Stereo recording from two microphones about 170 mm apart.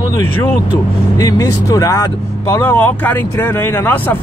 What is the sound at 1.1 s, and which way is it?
Speech, 20° left (ahead or behind).